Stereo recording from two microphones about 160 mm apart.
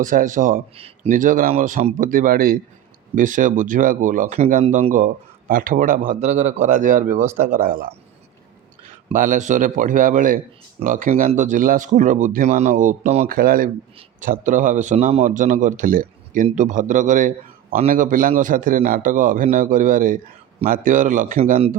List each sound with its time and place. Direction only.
0.0 s a man's voice: 55° right (ahead or behind)
0.8 s speech: 35° right (ahead or behind)
1.1 s a man's voice: 55° right (ahead or behind)
6.1 s a man's voice: 45° right (ahead or behind)
9.1 s a man's voice: 55° right (ahead or behind)
13.2 s a man's voice: 65° right (ahead or behind)